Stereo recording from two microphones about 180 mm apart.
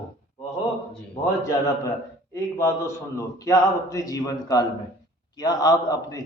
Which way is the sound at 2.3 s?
15° left (ahead or behind).